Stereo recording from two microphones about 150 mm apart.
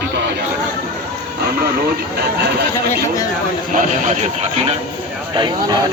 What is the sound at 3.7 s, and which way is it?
Speech, 55° right (ahead or behind).